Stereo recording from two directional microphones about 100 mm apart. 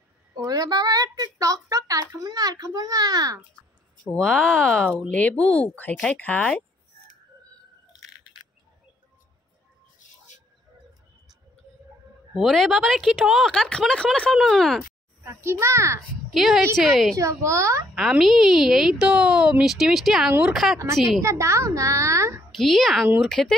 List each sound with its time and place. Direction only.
0.3 s a woman's voice: 40° right (ahead or behind)
4.0 s speech: 10° left (ahead or behind)
12.4 s speech: centre (ahead or behind)
15.2 s a child's voice: 25° right (ahead or behind)
16.3 s a woman's voice: centre (ahead or behind)
17.2 s a child's voice: 30° right (ahead or behind)
18.2 s speech: 5° right (ahead or behind)
21.2 s a child's voice: 30° right (ahead or behind)
22.5 s a woman's voice: centre (ahead or behind)